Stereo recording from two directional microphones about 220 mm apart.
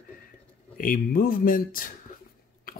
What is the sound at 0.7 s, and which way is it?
Speech, 40° left (ahead or behind).